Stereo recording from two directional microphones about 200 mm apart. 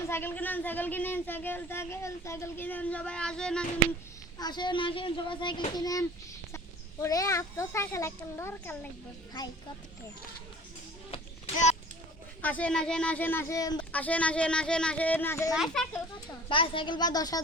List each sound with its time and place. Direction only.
0.1 s speech: 10° left (ahead or behind)
4.4 s a child's voice: 20° left (ahead or behind)
11.1 s a sound: 35° left (ahead or behind)
12.4 s speech: 5° left (ahead or behind)
13.9 s speech: 5° left (ahead or behind)
15.5 s a child's voice: centre (ahead or behind)
16.5 s a child's voice: 25° left (ahead or behind)